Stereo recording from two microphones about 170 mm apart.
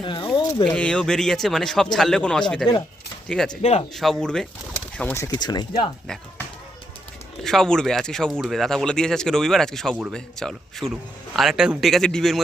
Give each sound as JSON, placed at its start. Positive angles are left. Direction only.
{"t": 0.0, "sound": "speech", "side_deg": 30}
{"t": 0.6, "sound": "speech", "side_deg": 5}
{"t": 3.6, "sound": "speech", "side_deg": 40}
{"t": 3.9, "sound": "speech", "side_deg": 0}
{"t": 7.4, "sound": "speech", "side_deg": 5}